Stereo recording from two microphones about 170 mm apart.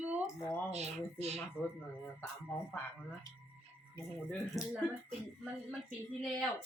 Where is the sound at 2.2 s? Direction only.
10° left (ahead or behind).